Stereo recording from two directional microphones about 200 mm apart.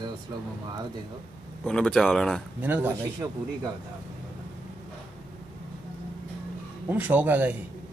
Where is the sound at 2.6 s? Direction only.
10° right (ahead or behind).